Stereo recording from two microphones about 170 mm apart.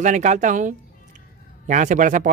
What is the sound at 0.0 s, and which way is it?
Speech, 45° right (ahead or behind).